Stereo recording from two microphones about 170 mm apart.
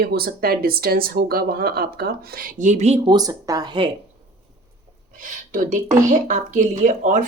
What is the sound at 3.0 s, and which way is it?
Speech, 20° right (ahead or behind).